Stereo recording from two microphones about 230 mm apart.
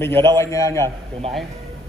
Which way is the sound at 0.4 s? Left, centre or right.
Centre.